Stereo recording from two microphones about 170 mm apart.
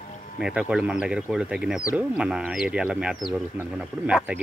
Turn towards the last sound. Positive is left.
turn(degrees=-10)  # may be behind; listen again after turning